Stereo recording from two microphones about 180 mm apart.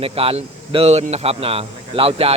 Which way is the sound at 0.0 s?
30° right (ahead or behind).